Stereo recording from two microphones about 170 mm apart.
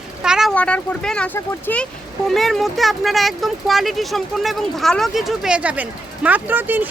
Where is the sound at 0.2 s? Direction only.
5° right (ahead or behind).